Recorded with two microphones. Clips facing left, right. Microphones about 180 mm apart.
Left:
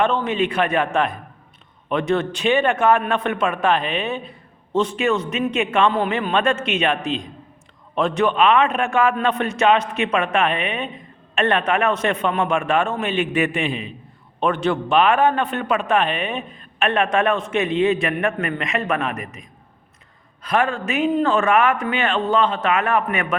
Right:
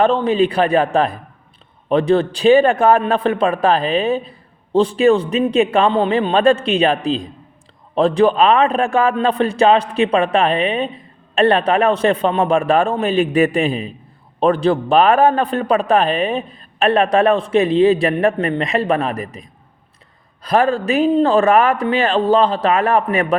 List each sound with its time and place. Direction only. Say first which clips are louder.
0.0 s a man's voice: right 5 dB; 35° right (ahead or behind)